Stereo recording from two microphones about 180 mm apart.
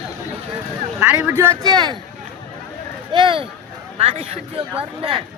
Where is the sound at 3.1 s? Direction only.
25° right (ahead or behind).